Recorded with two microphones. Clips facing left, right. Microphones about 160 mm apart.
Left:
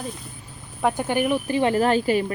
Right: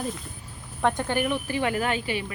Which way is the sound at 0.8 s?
10° left (ahead or behind).